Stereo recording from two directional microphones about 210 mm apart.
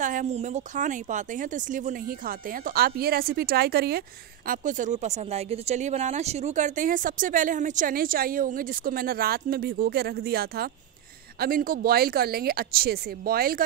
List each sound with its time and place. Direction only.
0.0 s speech: 35° right (ahead or behind)
4.5 s speech: 40° right (ahead or behind)